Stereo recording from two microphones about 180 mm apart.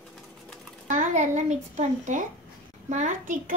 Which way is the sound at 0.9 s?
45° right (ahead or behind).